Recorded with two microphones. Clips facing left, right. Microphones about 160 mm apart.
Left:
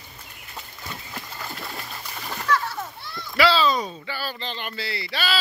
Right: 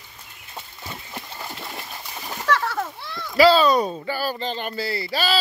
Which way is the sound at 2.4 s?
75° right (ahead or behind).